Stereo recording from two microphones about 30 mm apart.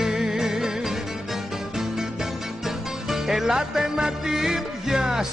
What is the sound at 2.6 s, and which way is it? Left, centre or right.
Music, centre.